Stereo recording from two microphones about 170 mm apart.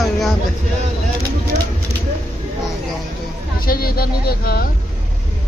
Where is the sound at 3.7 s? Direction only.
60° left (ahead or behind).